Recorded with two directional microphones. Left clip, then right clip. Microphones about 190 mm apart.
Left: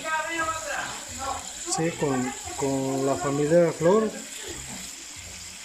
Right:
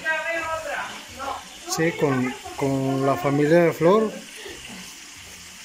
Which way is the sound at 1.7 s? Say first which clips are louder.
Right 4 dB; centre (ahead or behind).